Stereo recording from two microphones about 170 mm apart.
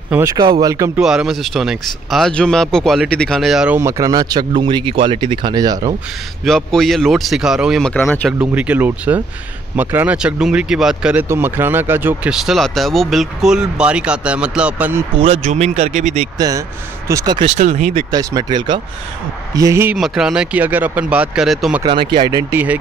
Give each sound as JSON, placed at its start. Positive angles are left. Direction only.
{"t": 0.1, "sound": "speech", "side_deg": -15}
{"t": 1.0, "sound": "speech", "side_deg": -5}
{"t": 3.8, "sound": "speech", "side_deg": -20}
{"t": 6.4, "sound": "speech", "side_deg": 0}
{"t": 8.4, "sound": "speech", "side_deg": -10}
{"t": 15.1, "sound": "speech", "side_deg": -35}
{"t": 16.3, "sound": "speech", "side_deg": -20}
{"t": 17.4, "sound": "speech", "side_deg": -45}
{"t": 17.9, "sound": "speech", "side_deg": -25}
{"t": 20.0, "sound": "speech", "side_deg": -5}
{"t": 21.8, "sound": "speech", "side_deg": -25}
{"t": 22.5, "sound": "speech", "side_deg": -10}